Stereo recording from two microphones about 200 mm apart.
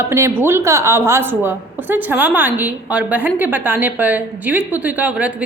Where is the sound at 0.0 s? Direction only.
15° right (ahead or behind).